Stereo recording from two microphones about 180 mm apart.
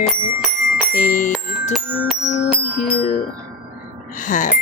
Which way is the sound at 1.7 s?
Centre (ahead or behind).